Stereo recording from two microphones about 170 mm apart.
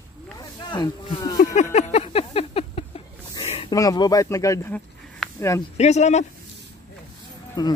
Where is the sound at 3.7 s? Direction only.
20° left (ahead or behind).